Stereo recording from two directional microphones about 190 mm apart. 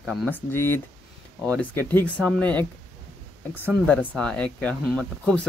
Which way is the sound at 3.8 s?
5° left (ahead or behind).